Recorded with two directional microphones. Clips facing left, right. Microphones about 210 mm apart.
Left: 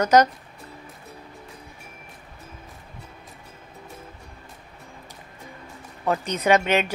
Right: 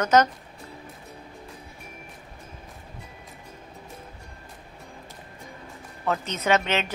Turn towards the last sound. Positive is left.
turn(degrees=15)  # may be behind; listen again after turning